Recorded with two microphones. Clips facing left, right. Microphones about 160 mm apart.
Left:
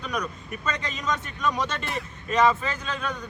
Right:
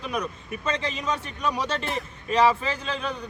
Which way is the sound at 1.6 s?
35° right (ahead or behind).